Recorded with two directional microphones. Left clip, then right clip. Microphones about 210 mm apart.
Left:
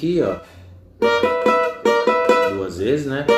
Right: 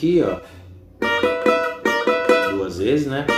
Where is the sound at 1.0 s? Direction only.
10° left (ahead or behind).